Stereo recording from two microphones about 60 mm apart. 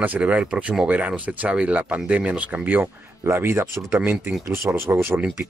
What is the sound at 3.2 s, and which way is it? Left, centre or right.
Speech, right.